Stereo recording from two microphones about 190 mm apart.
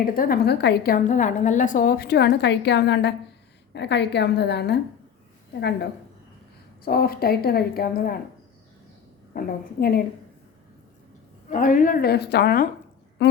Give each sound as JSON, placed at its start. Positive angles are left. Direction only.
{"t": 0.0, "sound": "a woman's voice", "side_deg": 50}
{"t": 0.9, "sound": "a woman's voice", "side_deg": 40}
{"t": 9.3, "sound": "a woman's voice", "side_deg": 50}
{"t": 11.4, "sound": "a woman's voice", "side_deg": 45}